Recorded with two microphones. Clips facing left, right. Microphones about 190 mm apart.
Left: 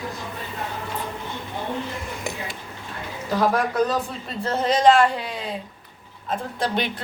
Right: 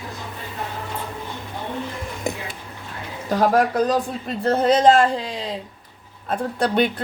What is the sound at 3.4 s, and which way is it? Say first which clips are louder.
Speech: right 3 dB; 40° right (ahead or behind).